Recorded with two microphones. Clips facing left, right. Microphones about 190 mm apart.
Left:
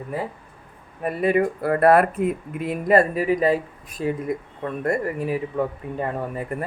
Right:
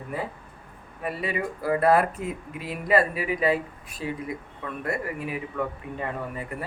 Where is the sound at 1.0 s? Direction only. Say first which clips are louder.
Left 9 dB; 55° left (ahead or behind).